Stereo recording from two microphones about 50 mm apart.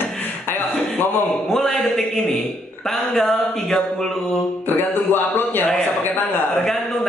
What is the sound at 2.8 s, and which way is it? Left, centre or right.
Speech, centre.